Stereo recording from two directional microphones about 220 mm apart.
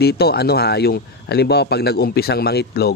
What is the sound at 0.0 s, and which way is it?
Speech, 45° left (ahead or behind).